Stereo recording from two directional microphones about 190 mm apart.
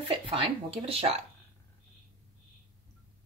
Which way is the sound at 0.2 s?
30° right (ahead or behind).